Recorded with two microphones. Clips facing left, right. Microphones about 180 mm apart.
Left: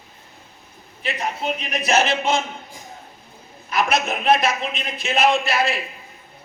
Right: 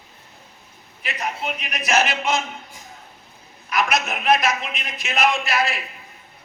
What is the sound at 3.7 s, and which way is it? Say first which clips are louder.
A man's voice: left 1 dB; 30° left (ahead or behind).